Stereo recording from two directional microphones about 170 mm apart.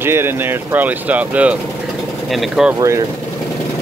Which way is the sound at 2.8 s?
20° right (ahead or behind).